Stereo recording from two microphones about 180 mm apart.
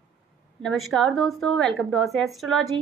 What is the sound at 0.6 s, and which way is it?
A woman's voice, centre (ahead or behind).